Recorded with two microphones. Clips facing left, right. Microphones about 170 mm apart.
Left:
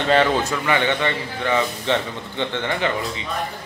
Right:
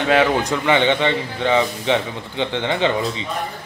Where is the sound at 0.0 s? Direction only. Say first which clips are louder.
Right 1 dB; 10° right (ahead or behind); by 3.3 s 25° right (ahead or behind).